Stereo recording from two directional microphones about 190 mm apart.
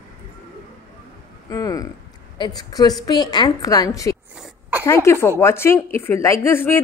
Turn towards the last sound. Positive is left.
turn(degrees=10)  # may be behind; listen again after turning